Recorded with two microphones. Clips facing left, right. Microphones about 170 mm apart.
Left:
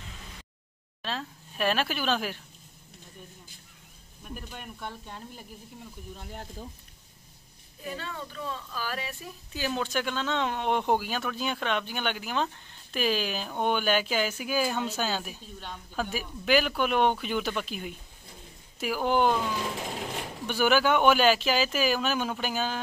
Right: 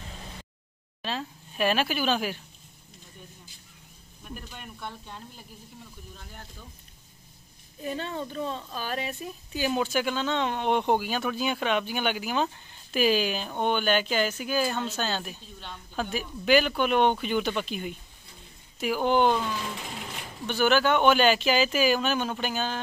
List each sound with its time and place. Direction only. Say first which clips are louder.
1.0 s speech: right 2 dB; 5° right (ahead or behind)
4.2 s speech: left 1 dB; 5° left (ahead or behind)
7.8 s a woman's voice: right 5 dB; 25° right (ahead or behind)
9.8 s speech: right 3 dB; 5° right (ahead or behind)
20.4 s speech: right 1 dB; 10° left (ahead or behind)